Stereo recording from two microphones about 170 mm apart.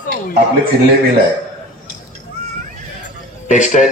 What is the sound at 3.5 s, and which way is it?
Speech, 45° left (ahead or behind).